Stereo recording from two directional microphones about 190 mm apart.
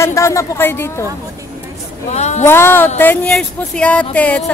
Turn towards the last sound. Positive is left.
turn(degrees=5)  # may be behind; listen again after turning